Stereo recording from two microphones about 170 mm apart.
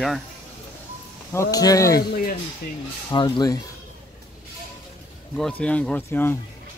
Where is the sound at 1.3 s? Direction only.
20° left (ahead or behind).